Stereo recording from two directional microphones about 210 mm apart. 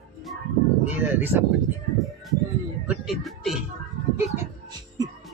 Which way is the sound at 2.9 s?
Centre (ahead or behind).